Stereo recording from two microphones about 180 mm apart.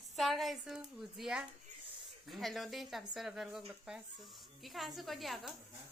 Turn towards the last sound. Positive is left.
turn(degrees=0)  # may be behind; listen again after turning